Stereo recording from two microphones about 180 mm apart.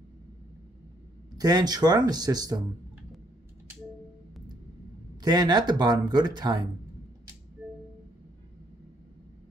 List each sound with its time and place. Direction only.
1.4 s speech: 20° right (ahead or behind)
5.2 s speech: 25° right (ahead or behind)